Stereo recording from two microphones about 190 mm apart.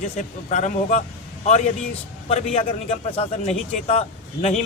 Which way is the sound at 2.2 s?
30° left (ahead or behind).